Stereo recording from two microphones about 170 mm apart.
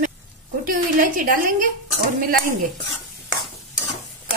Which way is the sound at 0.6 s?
55° right (ahead or behind).